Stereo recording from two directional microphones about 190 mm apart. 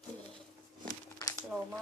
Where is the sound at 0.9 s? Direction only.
20° left (ahead or behind).